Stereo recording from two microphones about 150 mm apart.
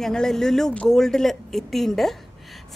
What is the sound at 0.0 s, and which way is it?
A woman's voice, 5° left (ahead or behind).